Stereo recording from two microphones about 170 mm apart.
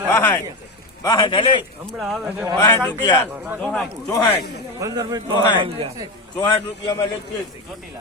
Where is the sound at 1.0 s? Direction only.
25° left (ahead or behind).